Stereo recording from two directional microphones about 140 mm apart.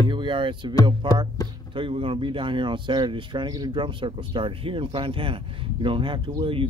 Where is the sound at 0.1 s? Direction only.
35° right (ahead or behind).